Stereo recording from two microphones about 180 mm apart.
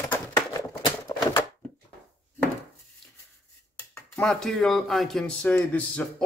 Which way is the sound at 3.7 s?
15° left (ahead or behind).